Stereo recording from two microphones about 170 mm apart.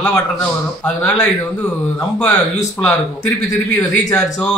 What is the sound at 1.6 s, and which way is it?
Speech, 5° left (ahead or behind).